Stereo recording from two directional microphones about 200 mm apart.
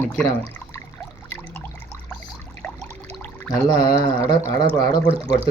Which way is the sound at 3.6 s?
20° left (ahead or behind).